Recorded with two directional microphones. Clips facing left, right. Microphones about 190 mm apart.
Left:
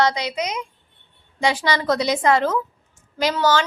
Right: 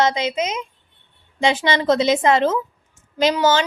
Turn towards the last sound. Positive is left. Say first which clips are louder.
# right 2 dB
turn(degrees=-20)  # may be behind; listen again after turning